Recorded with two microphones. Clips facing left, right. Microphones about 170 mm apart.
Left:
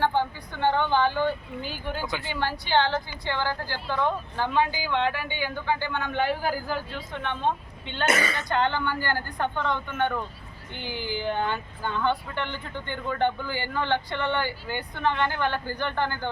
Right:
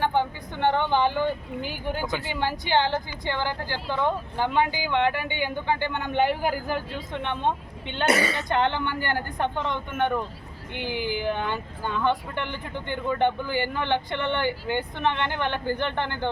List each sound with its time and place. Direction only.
0.0 s speech: 15° right (ahead or behind)
8.0 s speech: 30° right (ahead or behind)